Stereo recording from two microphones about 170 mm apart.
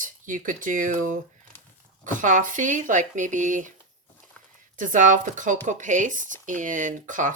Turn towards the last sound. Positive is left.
turn(degrees=-50)  # may be behind; listen again after turning